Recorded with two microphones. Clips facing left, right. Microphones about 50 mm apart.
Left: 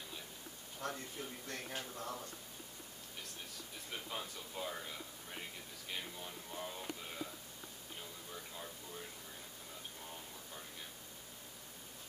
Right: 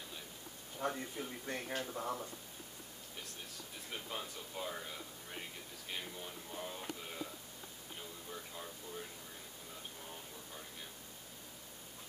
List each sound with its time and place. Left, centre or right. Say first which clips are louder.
0.7 s a man's voice: right 4 dB; centre
3.9 s speech: right 1 dB; centre